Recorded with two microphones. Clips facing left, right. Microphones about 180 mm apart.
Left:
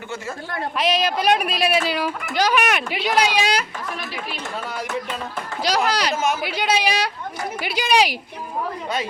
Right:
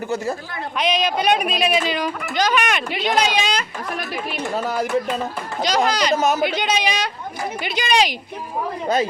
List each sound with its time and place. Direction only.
0.8 s speech: 5° left (ahead or behind)
4.5 s speech: 40° right (ahead or behind)
5.6 s a woman's voice: 5° left (ahead or behind)
6.1 s speech: 40° right (ahead or behind)
6.4 s a woman's voice: 5° left (ahead or behind)